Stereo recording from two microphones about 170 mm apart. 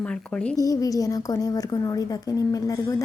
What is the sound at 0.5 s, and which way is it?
A woman's voice, 20° left (ahead or behind).